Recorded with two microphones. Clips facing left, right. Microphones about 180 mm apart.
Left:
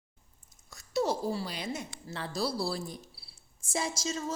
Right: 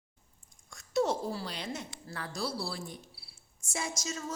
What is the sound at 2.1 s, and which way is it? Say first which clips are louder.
A woman's voice: left 4 dB; 30° left (ahead or behind).